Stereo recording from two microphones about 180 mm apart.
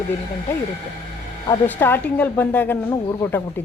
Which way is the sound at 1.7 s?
10° left (ahead or behind).